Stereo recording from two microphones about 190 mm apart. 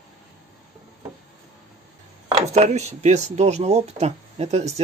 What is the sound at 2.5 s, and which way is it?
Speech, 35° right (ahead or behind).